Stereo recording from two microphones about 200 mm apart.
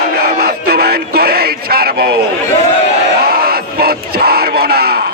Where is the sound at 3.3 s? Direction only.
50° right (ahead or behind).